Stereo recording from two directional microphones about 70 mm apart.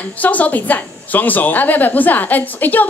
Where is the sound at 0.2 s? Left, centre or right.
Left.